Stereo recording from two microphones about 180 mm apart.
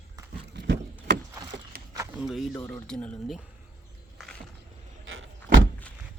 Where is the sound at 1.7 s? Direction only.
55° right (ahead or behind).